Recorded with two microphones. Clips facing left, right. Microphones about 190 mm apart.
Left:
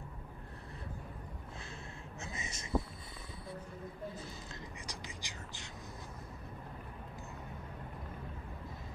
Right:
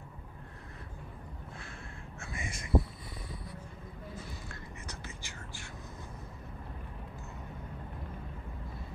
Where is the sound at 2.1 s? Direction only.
20° left (ahead or behind).